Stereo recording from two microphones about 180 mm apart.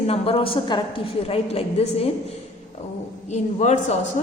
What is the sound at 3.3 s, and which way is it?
A woman's voice, 40° left (ahead or behind).